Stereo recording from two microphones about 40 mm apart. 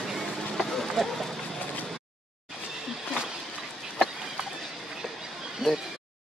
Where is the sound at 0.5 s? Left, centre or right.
Centre.